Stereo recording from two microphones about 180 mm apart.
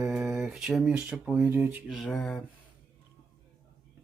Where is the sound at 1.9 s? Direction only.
Centre (ahead or behind).